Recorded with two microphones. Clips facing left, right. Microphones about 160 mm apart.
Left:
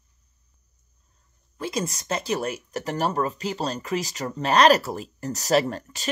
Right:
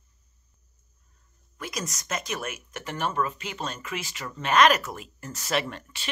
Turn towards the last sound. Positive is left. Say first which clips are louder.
# left 7 dB
turn(degrees=40)  # may be behind; listen again after turning